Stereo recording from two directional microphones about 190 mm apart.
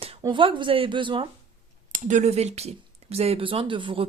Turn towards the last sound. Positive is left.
turn(degrees=-25)  # may be behind; listen again after turning